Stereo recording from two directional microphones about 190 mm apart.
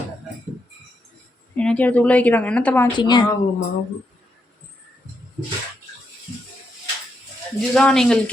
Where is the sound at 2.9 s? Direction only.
25° left (ahead or behind).